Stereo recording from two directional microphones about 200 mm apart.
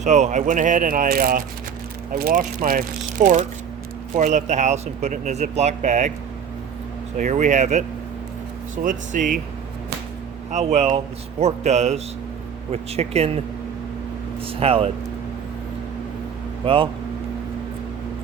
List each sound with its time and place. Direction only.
0.0 s speech: 35° right (ahead or behind)
7.2 s speech: 40° right (ahead or behind)
10.5 s speech: 35° right (ahead or behind)
14.4 s speech: 30° right (ahead or behind)
16.6 s speech: 25° right (ahead or behind)